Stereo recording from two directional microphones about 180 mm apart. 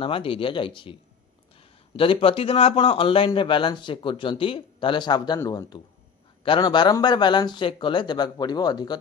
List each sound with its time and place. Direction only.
0.0 s a man's voice: 30° left (ahead or behind)
2.0 s a man's voice: 30° left (ahead or behind)